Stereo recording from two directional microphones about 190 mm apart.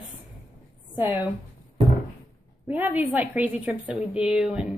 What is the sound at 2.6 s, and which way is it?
A woman's voice, 10° right (ahead or behind).